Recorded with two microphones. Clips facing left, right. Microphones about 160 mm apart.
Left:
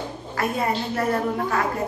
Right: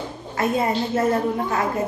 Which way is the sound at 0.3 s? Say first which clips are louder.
Right 3 dB; 25° right (ahead or behind).